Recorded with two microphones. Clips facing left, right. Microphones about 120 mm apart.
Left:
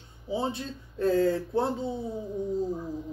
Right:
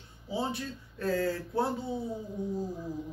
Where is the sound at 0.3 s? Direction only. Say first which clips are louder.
Left 3 dB; 20° left (ahead or behind).